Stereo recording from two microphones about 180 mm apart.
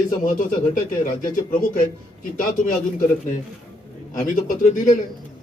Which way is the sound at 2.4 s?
50° left (ahead or behind).